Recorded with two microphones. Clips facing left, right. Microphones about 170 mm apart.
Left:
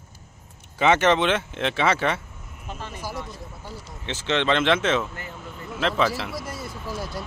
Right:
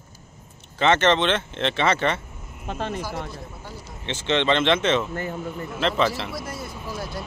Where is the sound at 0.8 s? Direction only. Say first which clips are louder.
Even; 10° left (ahead or behind).